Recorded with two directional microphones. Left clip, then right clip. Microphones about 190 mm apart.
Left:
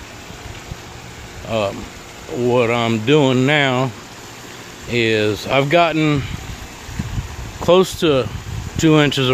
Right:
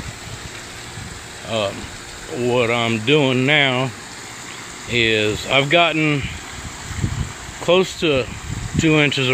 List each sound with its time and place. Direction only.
1.5 s speech: 10° left (ahead or behind)
4.9 s speech: 10° left (ahead or behind)
7.6 s speech: 15° left (ahead or behind)